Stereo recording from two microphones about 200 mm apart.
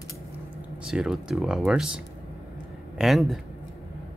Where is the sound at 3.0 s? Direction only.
Centre (ahead or behind).